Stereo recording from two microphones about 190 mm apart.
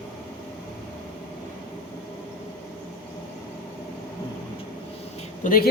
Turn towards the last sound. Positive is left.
turn(degrees=50)  # may be behind; listen again after turning